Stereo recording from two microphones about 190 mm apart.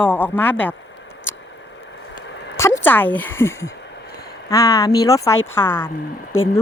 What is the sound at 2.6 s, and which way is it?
A woman's voice, 15° left (ahead or behind).